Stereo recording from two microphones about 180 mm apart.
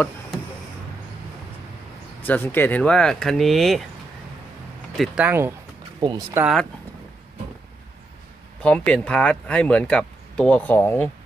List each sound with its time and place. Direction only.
2.2 s speech: 10° left (ahead or behind)
4.9 s speech: 5° right (ahead or behind); by 6.4 s 20° right (ahead or behind)
6.4 s speech: centre (ahead or behind)
8.6 s speech: 5° left (ahead or behind)